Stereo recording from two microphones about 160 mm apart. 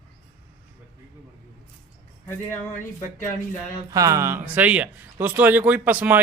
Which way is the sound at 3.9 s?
20° right (ahead or behind).